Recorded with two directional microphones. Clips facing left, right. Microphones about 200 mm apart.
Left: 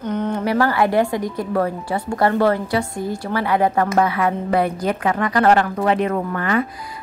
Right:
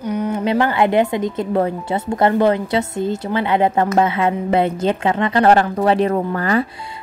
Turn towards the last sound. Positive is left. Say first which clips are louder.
# right 2 dB
turn(degrees=-35)  # may be behind; listen again after turning